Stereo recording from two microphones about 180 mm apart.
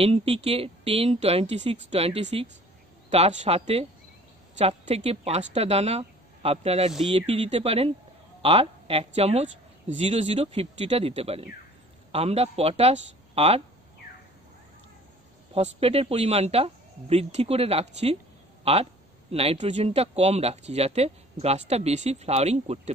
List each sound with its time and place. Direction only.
0.0 s speech: 35° right (ahead or behind)
15.5 s speech: 35° right (ahead or behind)